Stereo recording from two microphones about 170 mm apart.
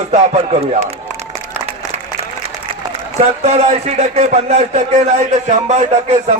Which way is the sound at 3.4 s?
40° right (ahead or behind).